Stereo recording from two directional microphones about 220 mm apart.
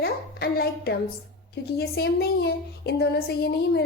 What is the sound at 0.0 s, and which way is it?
A child's voice, 45° left (ahead or behind).